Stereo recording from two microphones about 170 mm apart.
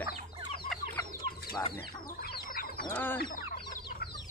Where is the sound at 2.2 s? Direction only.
60° left (ahead or behind).